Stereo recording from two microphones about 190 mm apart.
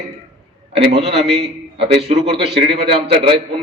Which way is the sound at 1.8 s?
60° right (ahead or behind).